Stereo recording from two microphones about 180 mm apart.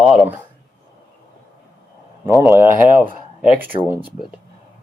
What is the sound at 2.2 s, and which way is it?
Speech, 15° right (ahead or behind).